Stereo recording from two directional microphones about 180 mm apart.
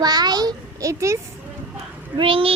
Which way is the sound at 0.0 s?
20° right (ahead or behind).